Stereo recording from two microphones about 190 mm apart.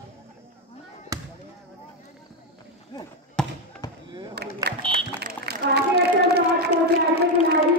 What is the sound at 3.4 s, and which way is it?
Basketball bounce, 5° left (ahead or behind).